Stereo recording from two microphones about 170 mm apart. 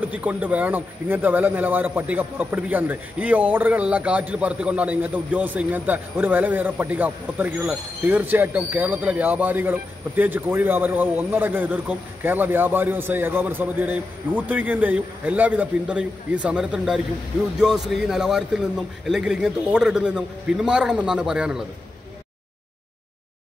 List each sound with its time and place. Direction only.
0.1 s a man's voice: 10° right (ahead or behind)